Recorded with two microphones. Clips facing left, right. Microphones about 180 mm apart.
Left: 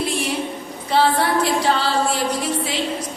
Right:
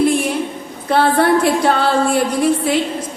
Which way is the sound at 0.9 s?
55° right (ahead or behind).